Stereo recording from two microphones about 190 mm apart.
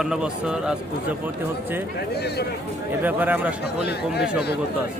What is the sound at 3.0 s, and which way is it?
Speech, 10° right (ahead or behind).